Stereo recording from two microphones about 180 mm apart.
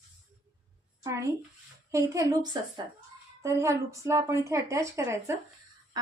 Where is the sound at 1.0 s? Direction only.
15° right (ahead or behind).